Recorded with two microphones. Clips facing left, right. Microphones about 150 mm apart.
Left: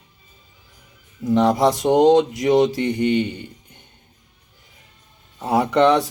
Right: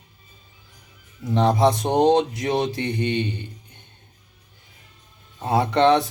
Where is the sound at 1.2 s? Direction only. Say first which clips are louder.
Left 7 dB; 15° left (ahead or behind).